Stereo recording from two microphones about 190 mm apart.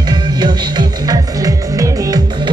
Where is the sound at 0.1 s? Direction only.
20° right (ahead or behind).